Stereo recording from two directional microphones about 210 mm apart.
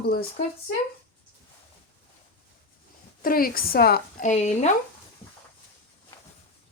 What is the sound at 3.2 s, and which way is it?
A woman's voice, 45° left (ahead or behind).